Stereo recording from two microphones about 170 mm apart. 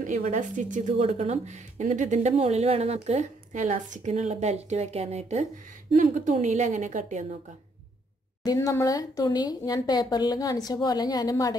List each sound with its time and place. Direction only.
0.0 s a woman's voice: 40° right (ahead or behind)
8.5 s speech: 20° left (ahead or behind)